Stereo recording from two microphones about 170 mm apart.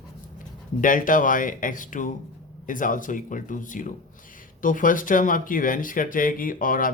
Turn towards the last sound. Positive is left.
turn(degrees=55)  # may be behind; listen again after turning